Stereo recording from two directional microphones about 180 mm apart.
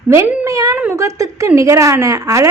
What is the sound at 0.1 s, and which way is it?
A woman's voice, 15° right (ahead or behind).